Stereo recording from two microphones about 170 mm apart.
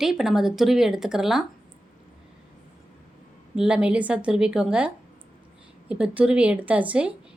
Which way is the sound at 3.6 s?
5° right (ahead or behind).